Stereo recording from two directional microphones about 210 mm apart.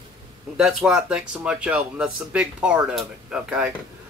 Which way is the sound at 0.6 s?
Centre (ahead or behind).